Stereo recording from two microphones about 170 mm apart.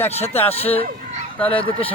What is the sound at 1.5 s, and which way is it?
Speech, 30° left (ahead or behind).